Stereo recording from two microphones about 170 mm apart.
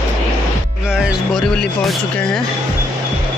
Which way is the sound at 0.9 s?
5° left (ahead or behind).